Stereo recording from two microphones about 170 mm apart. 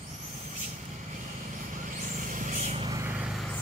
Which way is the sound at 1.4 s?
50° right (ahead or behind).